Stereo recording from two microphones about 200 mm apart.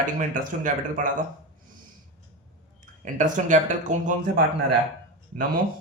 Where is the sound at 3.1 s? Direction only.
40° right (ahead or behind).